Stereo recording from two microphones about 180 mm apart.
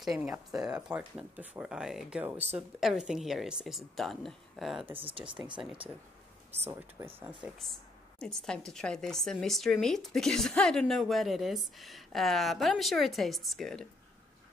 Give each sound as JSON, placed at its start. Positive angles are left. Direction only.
{"t": 0.0, "sound": "a woman's voice", "side_deg": 0}
{"t": 4.9, "sound": "speech", "side_deg": -30}
{"t": 7.0, "sound": "speech", "side_deg": -10}
{"t": 8.2, "sound": "a woman's voice", "side_deg": 5}